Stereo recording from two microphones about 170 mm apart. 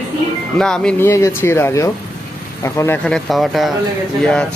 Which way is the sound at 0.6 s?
5° left (ahead or behind).